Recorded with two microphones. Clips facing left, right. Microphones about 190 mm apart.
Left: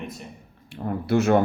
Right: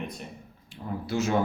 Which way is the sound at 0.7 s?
60° left (ahead or behind).